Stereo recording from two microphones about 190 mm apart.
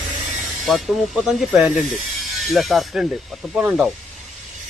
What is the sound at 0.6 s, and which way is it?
Speech, centre (ahead or behind).